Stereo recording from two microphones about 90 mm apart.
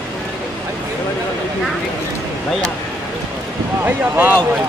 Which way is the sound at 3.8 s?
25° right (ahead or behind).